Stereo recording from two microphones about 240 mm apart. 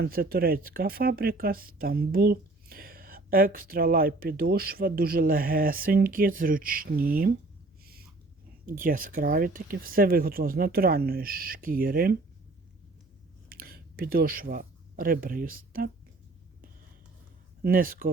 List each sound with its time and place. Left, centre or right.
0.0 s speech: right
8.6 s speech: right
13.5 s speech: right
17.6 s speech: right